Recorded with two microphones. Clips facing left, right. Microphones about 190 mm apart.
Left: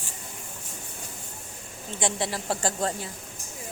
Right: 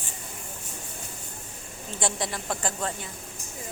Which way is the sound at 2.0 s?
25° left (ahead or behind).